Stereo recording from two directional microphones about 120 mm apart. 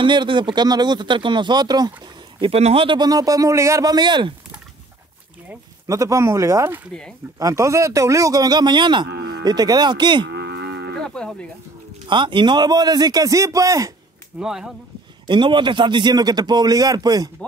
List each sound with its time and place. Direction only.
0.0 s speech: 40° right (ahead or behind)
2.3 s speech: 50° right (ahead or behind)
3.0 s speech: 30° right (ahead or behind)
5.9 s speech: 25° right (ahead or behind)
6.9 s speech: 5° left (ahead or behind)
7.3 s speech: 25° right (ahead or behind)
11.0 s moo: 5° left (ahead or behind)
12.1 s speech: 40° right (ahead or behind)
14.4 s speech: 5° right (ahead or behind)
15.2 s speech: 40° right (ahead or behind)